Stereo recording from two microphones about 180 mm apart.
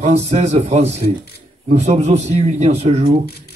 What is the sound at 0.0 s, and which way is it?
Speech, 40° right (ahead or behind).